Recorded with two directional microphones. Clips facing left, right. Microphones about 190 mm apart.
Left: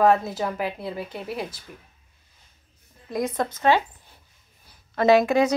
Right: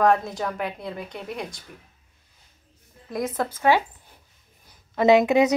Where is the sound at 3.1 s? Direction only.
Centre (ahead or behind).